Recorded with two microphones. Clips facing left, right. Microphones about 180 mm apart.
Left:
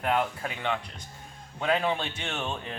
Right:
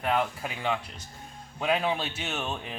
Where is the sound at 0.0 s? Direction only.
Centre (ahead or behind).